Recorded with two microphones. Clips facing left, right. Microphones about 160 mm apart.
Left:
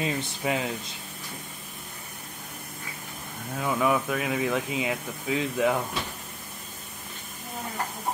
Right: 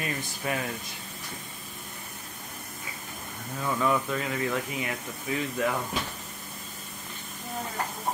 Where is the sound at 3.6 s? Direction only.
10° left (ahead or behind).